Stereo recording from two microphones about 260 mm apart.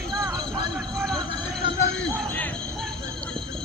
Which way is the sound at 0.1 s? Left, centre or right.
Centre.